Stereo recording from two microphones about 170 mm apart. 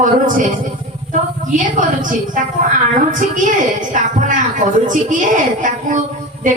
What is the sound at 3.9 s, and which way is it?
A woman's voice, 50° right (ahead or behind).